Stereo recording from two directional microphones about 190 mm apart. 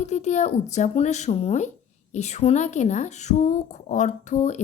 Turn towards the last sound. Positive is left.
turn(degrees=40)  # may be behind; listen again after turning